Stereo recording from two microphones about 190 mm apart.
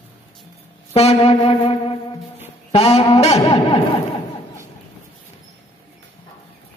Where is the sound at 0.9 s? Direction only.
30° left (ahead or behind).